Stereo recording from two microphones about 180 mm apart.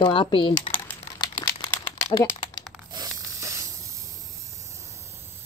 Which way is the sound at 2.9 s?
20° right (ahead or behind).